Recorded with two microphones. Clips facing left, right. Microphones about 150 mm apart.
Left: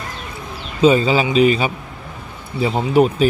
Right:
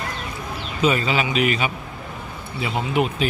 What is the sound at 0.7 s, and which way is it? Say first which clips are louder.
Speech: left 7 dB; 30° left (ahead or behind).